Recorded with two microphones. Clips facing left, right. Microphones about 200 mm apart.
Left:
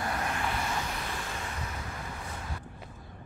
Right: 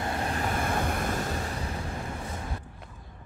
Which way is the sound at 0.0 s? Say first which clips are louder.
Right 3 dB; 30° right (ahead or behind).